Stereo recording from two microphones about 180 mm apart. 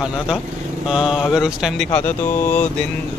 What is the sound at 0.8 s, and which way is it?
Speech, centre (ahead or behind).